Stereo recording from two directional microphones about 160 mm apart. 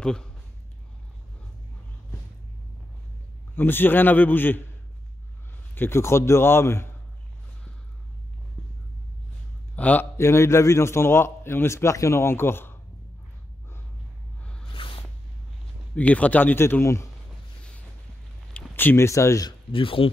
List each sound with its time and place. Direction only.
0.0 s speech: 5° left (ahead or behind)
3.5 s a man's voice: 15° left (ahead or behind)
5.8 s a man's voice: 15° left (ahead or behind)
9.8 s a man's voice: 10° left (ahead or behind)
14.7 s a sound: 35° left (ahead or behind)
15.9 s a man's voice: 10° left (ahead or behind)
18.5 s speech: 10° left (ahead or behind)
19.7 s speech: 35° left (ahead or behind)